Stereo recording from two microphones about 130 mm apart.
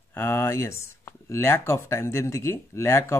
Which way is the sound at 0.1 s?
15° left (ahead or behind).